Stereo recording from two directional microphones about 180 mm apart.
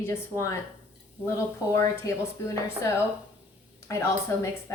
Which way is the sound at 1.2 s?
10° right (ahead or behind).